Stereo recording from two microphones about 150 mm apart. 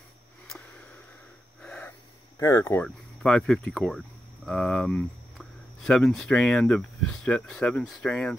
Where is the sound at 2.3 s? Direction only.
20° left (ahead or behind).